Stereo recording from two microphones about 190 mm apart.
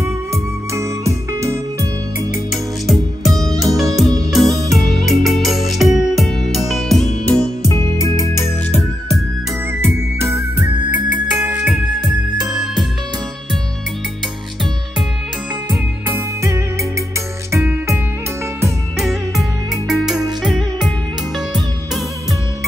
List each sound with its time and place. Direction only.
0.0 s music: 15° right (ahead or behind)
2.3 s music: centre (ahead or behind)
7.6 s music: 15° left (ahead or behind)
9.8 s music: 15° right (ahead or behind)
16.1 s music: 15° right (ahead or behind)
18.9 s music: centre (ahead or behind)